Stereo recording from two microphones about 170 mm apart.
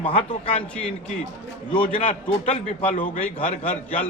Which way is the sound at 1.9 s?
45° left (ahead or behind).